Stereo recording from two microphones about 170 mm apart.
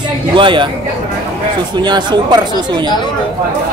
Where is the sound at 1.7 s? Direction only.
25° right (ahead or behind).